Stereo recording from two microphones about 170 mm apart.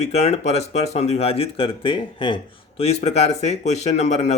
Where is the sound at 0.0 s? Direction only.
40° left (ahead or behind).